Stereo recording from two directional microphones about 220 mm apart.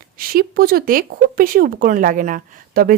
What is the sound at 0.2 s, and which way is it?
Speech, 40° right (ahead or behind).